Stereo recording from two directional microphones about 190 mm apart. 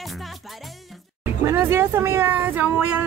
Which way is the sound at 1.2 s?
10° right (ahead or behind).